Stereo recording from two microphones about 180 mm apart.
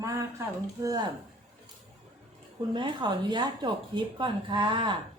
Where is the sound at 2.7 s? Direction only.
25° right (ahead or behind).